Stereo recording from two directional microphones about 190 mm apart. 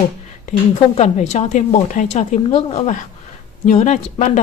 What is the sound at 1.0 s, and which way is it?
A woman's voice, 35° left (ahead or behind).